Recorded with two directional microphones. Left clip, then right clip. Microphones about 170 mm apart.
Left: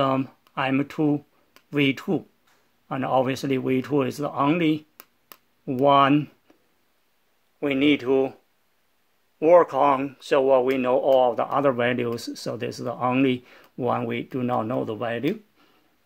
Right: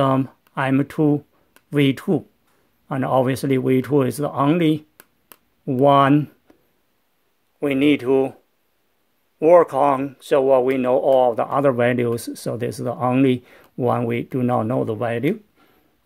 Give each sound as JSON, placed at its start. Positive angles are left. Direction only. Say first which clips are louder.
{"t": 0.0, "sound": "speech", "louder": "right 4 dB", "side_deg": -30}
{"t": 7.6, "sound": "speech", "louder": "right 3 dB", "side_deg": -30}
{"t": 9.4, "sound": "speech", "louder": "right 3 dB", "side_deg": -25}